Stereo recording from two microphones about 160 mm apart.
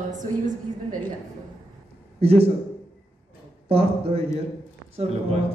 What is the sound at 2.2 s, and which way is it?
Speech, 40° right (ahead or behind).